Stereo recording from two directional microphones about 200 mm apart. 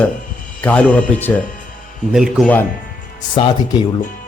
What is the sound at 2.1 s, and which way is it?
Speech, centre (ahead or behind).